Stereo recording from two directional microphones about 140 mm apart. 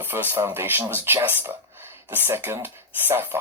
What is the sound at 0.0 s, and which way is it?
Speech, 15° right (ahead or behind).